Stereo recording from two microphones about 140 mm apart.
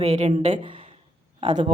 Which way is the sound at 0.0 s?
50° right (ahead or behind).